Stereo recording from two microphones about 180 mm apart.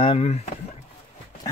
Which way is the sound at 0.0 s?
35° left (ahead or behind).